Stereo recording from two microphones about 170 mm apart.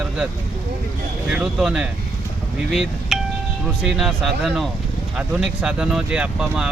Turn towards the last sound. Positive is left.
turn(degrees=-5)  # may be behind; listen again after turning